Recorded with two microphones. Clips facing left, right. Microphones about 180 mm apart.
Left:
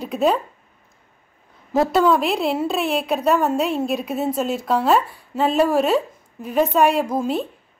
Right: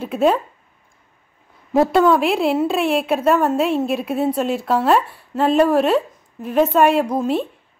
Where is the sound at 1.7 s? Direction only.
Centre (ahead or behind).